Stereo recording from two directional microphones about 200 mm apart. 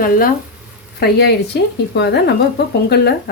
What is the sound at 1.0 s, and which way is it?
Speech, 55° left (ahead or behind).